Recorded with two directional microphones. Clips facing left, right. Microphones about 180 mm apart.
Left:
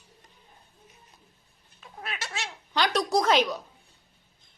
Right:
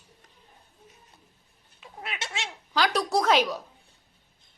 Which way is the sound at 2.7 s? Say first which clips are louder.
Even; centre (ahead or behind).